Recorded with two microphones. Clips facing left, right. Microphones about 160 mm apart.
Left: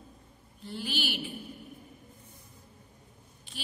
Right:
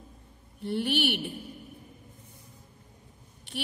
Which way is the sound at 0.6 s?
65° right (ahead or behind).